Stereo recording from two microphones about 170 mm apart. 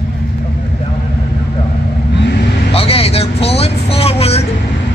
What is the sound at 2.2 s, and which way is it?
Vehicle, 70° left (ahead or behind).